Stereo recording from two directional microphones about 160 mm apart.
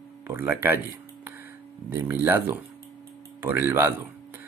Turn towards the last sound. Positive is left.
turn(degrees=-15)  # may be behind; listen again after turning